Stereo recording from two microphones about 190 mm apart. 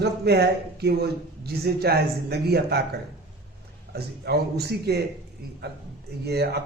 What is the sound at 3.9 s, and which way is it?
Speech, 60° right (ahead or behind).